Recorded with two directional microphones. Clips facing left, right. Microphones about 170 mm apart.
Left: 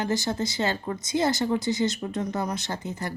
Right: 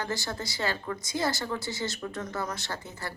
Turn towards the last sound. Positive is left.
turn(degrees=20)  # may be behind; listen again after turning